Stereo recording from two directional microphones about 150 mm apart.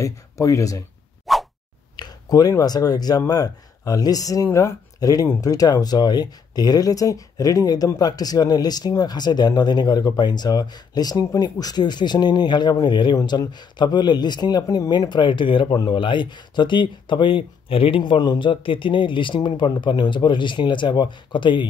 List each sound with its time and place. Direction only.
0.0 s speech: 20° left (ahead or behind)
1.2 s whoosh: centre (ahead or behind)
2.0 s speech: 25° left (ahead or behind)